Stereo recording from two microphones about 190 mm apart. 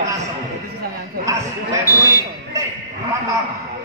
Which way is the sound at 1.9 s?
15° left (ahead or behind).